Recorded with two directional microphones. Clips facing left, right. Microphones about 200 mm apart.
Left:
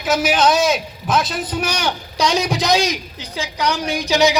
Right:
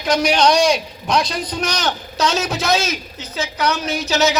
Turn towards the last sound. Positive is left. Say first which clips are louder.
# left 2 dB
turn(degrees=15)  # may be behind; listen again after turning